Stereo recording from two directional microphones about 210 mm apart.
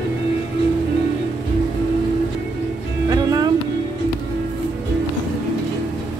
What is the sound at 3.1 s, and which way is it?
Music, 20° right (ahead or behind).